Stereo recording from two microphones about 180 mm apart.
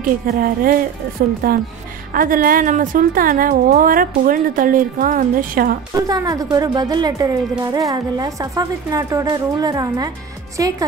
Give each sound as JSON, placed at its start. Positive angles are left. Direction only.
{"t": 0.0, "sound": "a woman's voice", "side_deg": -50}
{"t": 5.9, "sound": "a woman's voice", "side_deg": -20}